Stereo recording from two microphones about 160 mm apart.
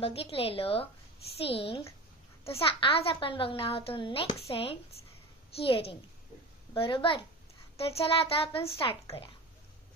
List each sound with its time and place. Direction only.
0.0 s a child's voice: 35° left (ahead or behind)